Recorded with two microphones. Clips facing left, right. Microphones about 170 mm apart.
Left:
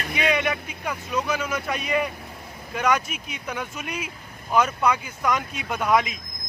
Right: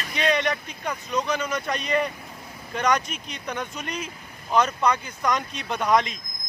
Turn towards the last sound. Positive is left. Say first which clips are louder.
# even
turn(degrees=5)  # may be behind; listen again after turning